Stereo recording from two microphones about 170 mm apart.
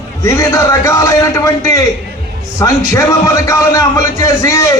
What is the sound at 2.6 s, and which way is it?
A man's voice, 20° left (ahead or behind).